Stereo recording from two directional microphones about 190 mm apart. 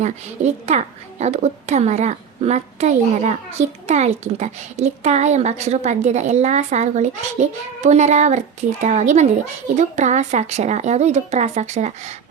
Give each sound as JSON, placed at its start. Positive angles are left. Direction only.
{"t": 0.0, "sound": "a woman's voice", "side_deg": -35}